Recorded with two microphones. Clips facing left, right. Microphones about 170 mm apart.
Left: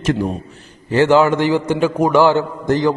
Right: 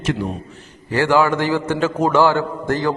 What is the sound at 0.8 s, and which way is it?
A man's voice, 20° left (ahead or behind).